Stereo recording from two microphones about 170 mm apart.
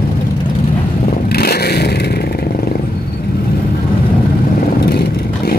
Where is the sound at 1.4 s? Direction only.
70° left (ahead or behind).